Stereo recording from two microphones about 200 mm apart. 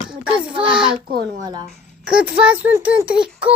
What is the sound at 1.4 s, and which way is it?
Speech, 20° right (ahead or behind).